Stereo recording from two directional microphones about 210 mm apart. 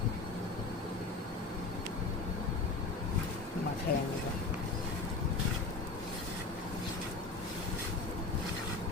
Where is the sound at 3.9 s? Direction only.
45° left (ahead or behind).